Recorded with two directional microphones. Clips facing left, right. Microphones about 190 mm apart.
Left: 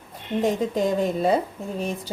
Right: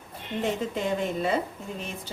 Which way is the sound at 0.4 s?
40° left (ahead or behind).